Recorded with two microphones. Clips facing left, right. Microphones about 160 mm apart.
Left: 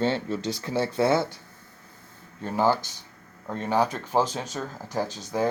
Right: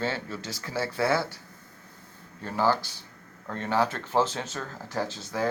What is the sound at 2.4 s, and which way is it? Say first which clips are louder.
Speech: left 2 dB; 15° left (ahead or behind).